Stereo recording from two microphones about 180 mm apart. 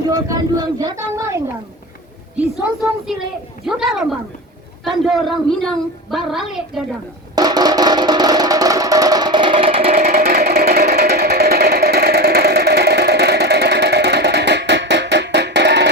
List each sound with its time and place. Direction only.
0.2 s speech: 20° right (ahead or behind)
3.6 s a woman's voice: centre (ahead or behind)
7.3 s music: 20° right (ahead or behind)
9.9 s a sound: 50° right (ahead or behind); by 15.9 s 70° right (ahead or behind)